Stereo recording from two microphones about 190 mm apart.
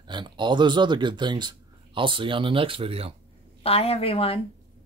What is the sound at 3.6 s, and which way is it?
Speech, 30° left (ahead or behind).